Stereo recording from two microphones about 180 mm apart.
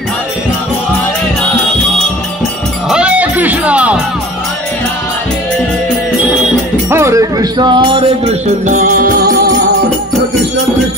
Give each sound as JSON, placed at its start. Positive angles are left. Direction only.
{"t": 2.9, "sound": "music", "side_deg": -5}
{"t": 6.9, "sound": "music", "side_deg": -15}
{"t": 8.6, "sound": "music", "side_deg": -45}